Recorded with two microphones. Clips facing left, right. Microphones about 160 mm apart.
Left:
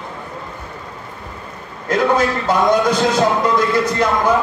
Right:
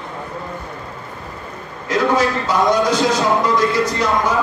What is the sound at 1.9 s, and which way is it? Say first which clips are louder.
Speech: left 1 dB; 55° left (ahead or behind).